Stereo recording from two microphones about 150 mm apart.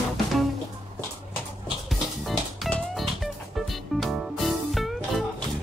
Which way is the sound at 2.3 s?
Centre (ahead or behind).